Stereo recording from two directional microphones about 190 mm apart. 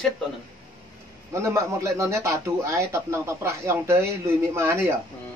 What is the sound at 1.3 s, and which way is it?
A man's voice, 15° right (ahead or behind).